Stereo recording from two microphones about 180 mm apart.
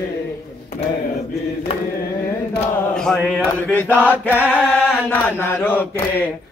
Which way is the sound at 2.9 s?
5° left (ahead or behind).